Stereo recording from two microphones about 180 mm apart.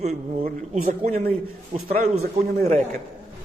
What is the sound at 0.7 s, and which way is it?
A man's voice, 40° right (ahead or behind).